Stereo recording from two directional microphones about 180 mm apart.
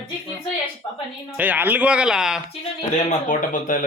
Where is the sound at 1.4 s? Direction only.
10° right (ahead or behind).